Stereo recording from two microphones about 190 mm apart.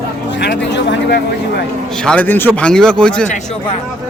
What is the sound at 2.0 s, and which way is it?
Speech, 10° left (ahead or behind).